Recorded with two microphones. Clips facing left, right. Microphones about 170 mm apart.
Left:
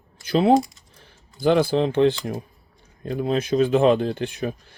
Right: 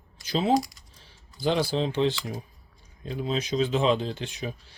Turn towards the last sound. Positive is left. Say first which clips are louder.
# left 7 dB
turn(degrees=55)  # may be behind; listen again after turning